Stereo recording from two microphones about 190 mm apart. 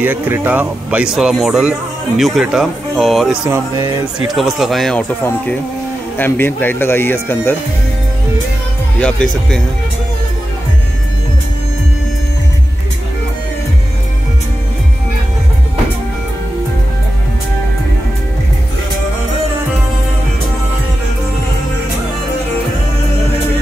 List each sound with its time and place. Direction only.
0.0 s speech: 10° right (ahead or behind)
3.4 s speech: 15° right (ahead or behind)
4.3 s speech: centre (ahead or behind)
6.1 s speech: 10° left (ahead or behind)
9.0 s speech: 5° left (ahead or behind)